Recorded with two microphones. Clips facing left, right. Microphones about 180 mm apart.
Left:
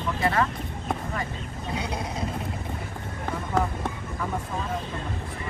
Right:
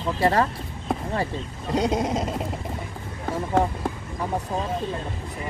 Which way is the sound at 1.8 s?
45° right (ahead or behind).